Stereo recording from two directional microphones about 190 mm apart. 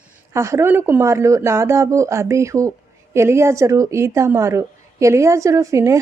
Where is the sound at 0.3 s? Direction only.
15° right (ahead or behind).